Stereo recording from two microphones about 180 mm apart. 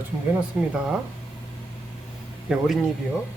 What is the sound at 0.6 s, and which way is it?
Speech, 5° right (ahead or behind).